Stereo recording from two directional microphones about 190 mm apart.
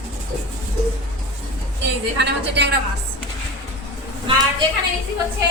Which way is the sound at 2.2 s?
65° right (ahead or behind).